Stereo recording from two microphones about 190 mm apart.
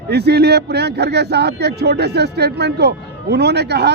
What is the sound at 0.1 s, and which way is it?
Speech, 60° right (ahead or behind).